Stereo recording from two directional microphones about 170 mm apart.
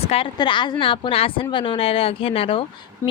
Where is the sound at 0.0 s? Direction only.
35° left (ahead or behind).